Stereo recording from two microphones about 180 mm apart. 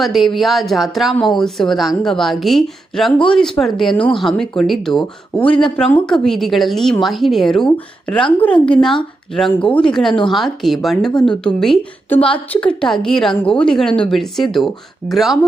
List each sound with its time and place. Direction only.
0.0 s speech: centre (ahead or behind)